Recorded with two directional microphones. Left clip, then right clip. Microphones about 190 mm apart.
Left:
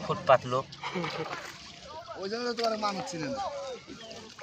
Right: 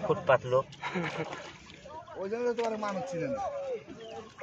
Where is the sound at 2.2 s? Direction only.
50° right (ahead or behind).